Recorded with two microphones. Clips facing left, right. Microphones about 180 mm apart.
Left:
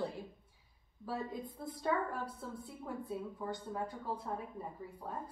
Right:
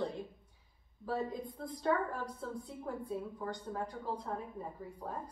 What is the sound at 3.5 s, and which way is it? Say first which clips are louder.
Speech: left 1 dB; 5° left (ahead or behind).